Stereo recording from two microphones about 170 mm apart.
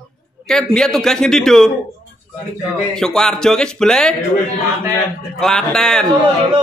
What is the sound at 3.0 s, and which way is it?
A man's voice, 5° left (ahead or behind).